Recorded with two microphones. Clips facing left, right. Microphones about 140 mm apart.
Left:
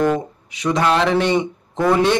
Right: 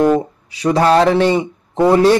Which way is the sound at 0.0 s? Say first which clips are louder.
Right 5 dB; 35° right (ahead or behind).